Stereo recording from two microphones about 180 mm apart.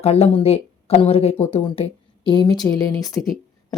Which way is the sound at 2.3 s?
25° left (ahead or behind).